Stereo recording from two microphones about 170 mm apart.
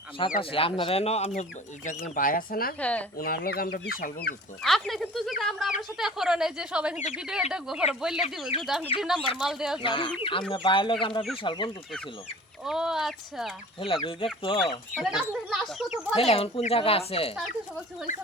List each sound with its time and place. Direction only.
0.2 s speech: 30° left (ahead or behind); by 2.7 s 60° left (ahead or behind)
2.8 s speech: 10° left (ahead or behind)
3.2 s speech: 60° left (ahead or behind)
4.6 s a woman's voice: centre (ahead or behind)
8.5 s speech: 35° left (ahead or behind)
9.0 s a woman's voice: centre (ahead or behind)
9.8 s speech: 30° left (ahead or behind)
12.6 s a woman's voice: 5° right (ahead or behind)
13.7 s speech: 30° left (ahead or behind)
14.9 s a woman's voice: 5° left (ahead or behind)
16.1 s speech: 35° left (ahead or behind)